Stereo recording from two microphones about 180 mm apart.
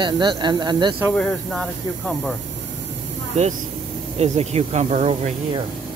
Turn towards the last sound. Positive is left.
turn(degrees=-35)  # may be behind; listen again after turning